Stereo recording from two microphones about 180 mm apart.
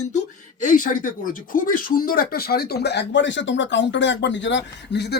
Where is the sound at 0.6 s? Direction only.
45° left (ahead or behind).